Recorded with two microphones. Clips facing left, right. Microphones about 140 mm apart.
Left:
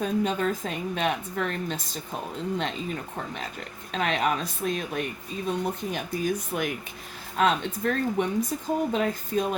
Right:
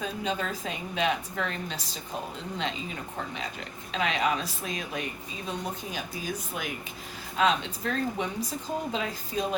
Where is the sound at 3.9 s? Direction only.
50° left (ahead or behind).